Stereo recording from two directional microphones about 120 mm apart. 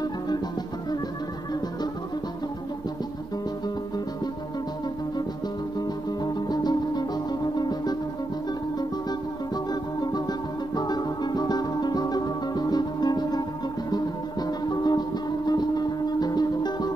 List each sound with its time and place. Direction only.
5.8 s music: 35° left (ahead or behind)
9.7 s music: 35° left (ahead or behind)